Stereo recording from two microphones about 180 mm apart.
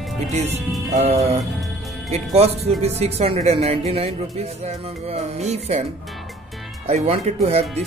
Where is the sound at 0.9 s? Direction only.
40° right (ahead or behind).